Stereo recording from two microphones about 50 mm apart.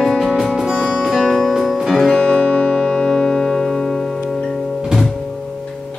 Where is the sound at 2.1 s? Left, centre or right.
Left.